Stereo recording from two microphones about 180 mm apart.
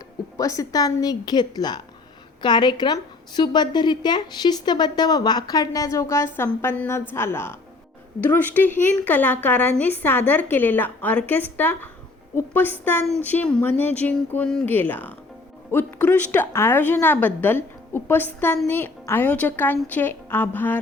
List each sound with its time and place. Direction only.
0.3 s a woman's voice: 20° left (ahead or behind)